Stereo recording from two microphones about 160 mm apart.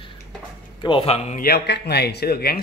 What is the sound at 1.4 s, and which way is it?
Speech, 85° left.